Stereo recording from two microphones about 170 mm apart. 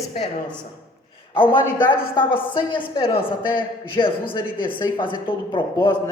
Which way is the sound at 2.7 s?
30° left (ahead or behind).